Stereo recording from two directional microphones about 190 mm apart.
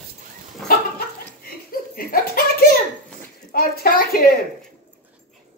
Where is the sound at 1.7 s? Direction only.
50° left (ahead or behind).